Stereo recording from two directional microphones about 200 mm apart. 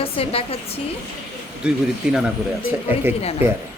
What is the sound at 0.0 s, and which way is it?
Speech, 30° left (ahead or behind).